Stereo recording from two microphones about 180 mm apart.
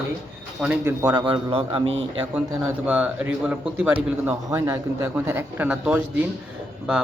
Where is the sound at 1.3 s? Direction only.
30° right (ahead or behind).